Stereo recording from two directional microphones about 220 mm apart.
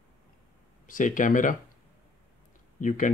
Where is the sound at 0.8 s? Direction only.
35° left (ahead or behind).